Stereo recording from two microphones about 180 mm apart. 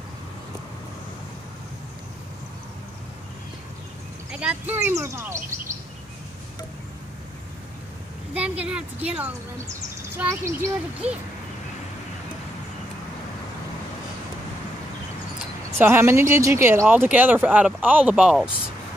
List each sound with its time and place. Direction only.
4.3 s speech: 5° right (ahead or behind)
8.4 s speech: 5° right (ahead or behind)
15.8 s speech: 10° right (ahead or behind)